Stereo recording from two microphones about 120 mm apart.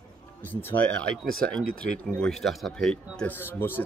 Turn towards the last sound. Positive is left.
turn(degrees=15)  # may be behind; listen again after turning